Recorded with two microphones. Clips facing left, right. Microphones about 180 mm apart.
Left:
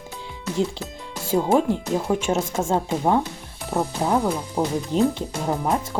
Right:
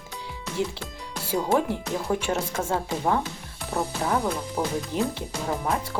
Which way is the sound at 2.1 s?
20° left (ahead or behind).